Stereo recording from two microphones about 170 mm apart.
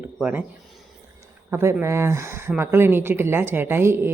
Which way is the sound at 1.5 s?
15° right (ahead or behind).